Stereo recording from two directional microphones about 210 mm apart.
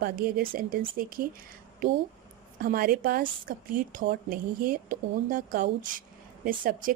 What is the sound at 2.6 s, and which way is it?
Speech, 45° right (ahead or behind).